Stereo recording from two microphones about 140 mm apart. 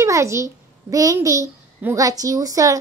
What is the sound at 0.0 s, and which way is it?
A child's voice, 20° right (ahead or behind).